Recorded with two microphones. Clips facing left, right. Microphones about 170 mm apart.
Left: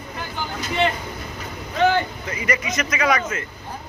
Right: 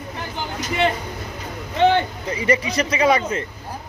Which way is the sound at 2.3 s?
30° right (ahead or behind).